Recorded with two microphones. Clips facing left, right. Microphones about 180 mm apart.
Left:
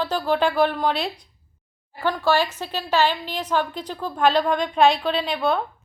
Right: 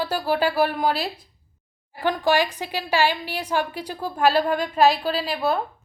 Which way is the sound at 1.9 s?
15° right (ahead or behind).